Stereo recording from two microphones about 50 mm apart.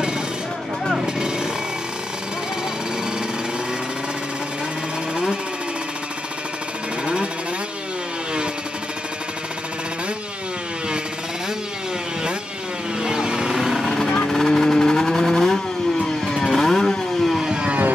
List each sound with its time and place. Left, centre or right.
0.9 s vehicle: centre
5.1 s sewing machine: centre
13.0 s vehicle: centre
13.8 s vehicle: centre
17.4 s vehicle: centre